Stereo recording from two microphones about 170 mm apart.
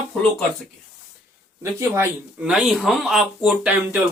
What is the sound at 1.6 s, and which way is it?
Speech, 15° right (ahead or behind).